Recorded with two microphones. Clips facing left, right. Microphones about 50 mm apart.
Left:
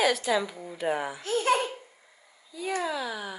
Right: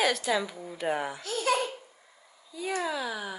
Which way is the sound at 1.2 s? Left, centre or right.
Left.